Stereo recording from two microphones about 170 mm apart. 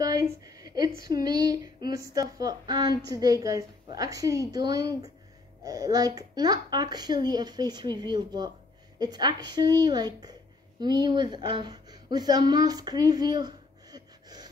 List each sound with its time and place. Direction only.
0.0 s a woman's voice: 20° right (ahead or behind)